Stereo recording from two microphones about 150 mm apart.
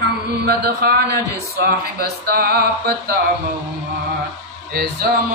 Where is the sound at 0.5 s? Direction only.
90° right.